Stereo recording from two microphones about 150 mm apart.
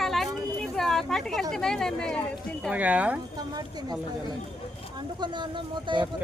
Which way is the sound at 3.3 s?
25° right (ahead or behind).